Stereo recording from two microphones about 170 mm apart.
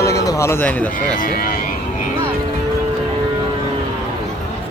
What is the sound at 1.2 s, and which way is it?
Speech, 55° left (ahead or behind).